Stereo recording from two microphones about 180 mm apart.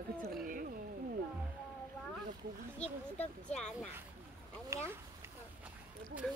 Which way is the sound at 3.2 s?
5° left (ahead or behind).